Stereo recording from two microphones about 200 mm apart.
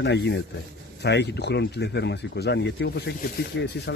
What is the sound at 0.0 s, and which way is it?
Speech, 65° left (ahead or behind).